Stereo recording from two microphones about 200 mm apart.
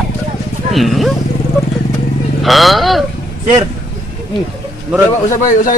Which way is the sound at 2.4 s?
Centre (ahead or behind).